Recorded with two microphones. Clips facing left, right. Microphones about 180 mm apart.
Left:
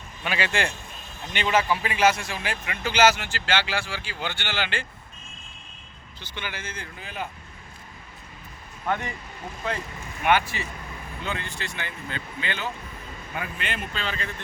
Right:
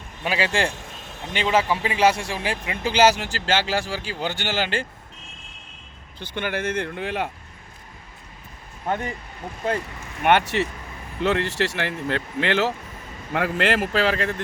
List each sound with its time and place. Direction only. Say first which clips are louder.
0.3 s a man's voice: right 4 dB; 30° right (ahead or behind)
6.1 s speech: right 9 dB; 55° right (ahead or behind); by 7.3 s 75° right (ahead or behind)
8.9 s a man's voice: right 2 dB; 40° right (ahead or behind)
10.2 s speech: right 4 dB; 70° right (ahead or behind)